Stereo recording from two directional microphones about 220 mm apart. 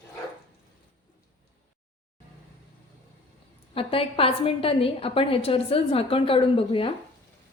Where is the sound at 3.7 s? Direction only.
25° left (ahead or behind).